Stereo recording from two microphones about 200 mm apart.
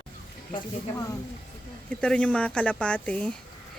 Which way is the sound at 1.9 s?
5° left (ahead or behind).